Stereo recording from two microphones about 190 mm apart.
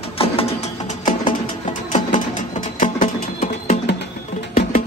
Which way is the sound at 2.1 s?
40° left (ahead or behind).